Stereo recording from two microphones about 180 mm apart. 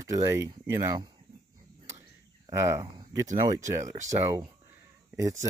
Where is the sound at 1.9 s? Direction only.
15° right (ahead or behind).